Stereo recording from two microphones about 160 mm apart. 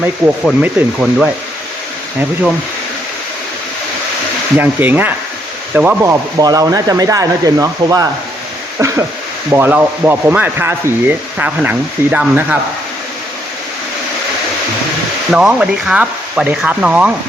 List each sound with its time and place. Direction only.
0.6 s speech: centre (ahead or behind)
4.5 s sanding: 10° right (ahead or behind)
5.7 s speech: 10° right (ahead or behind)
8.8 s a sound: 15° right (ahead or behind)
9.5 s sanding: 10° right (ahead or behind)
15.3 s sanding: 5° right (ahead or behind)